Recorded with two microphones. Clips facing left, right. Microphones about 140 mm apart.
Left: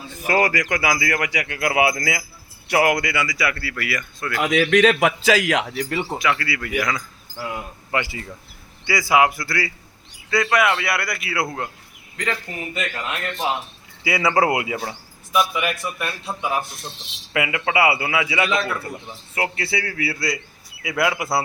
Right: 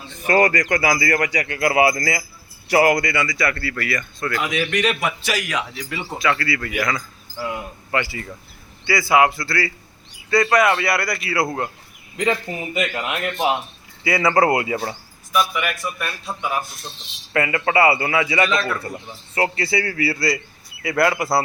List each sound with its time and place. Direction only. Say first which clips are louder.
0.1 s speech: right 3 dB; 5° left (ahead or behind)
4.4 s a man's voice: left 7 dB; 75° left (ahead or behind); by 6.0 s 55° left (ahead or behind)
6.1 s speech: right 6 dB; 15° left (ahead or behind)
7.9 s speech: right 1 dB; 20° left (ahead or behind)
10.2 s speech: right 3 dB; centre (ahead or behind)
12.1 s a man's voice: right 5 dB; 20° right (ahead or behind)
14.0 s speech: right 2 dB; 10° left (ahead or behind)
15.3 s a man's voice: even; 20° left (ahead or behind)
17.3 s speech: right 2 dB; 10° left (ahead or behind)